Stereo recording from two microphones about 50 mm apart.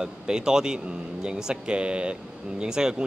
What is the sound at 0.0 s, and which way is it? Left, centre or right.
Speech, centre.